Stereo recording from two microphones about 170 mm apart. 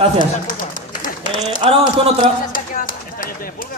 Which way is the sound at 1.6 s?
35° right (ahead or behind).